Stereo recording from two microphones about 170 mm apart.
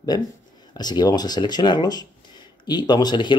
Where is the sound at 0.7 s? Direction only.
25° left (ahead or behind).